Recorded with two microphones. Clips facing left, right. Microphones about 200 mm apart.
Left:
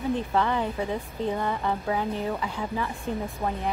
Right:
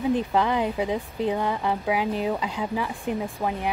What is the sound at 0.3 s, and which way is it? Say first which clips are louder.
Speech: right 2 dB; 15° right (ahead or behind).